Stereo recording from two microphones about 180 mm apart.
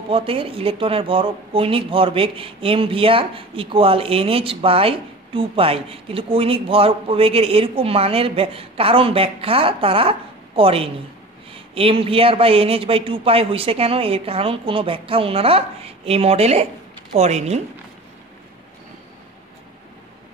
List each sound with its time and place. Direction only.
0.1 s speech: 30° right (ahead or behind)